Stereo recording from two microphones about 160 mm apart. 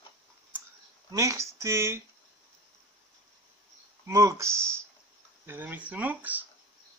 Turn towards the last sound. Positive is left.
turn(degrees=-10)  # may be behind; listen again after turning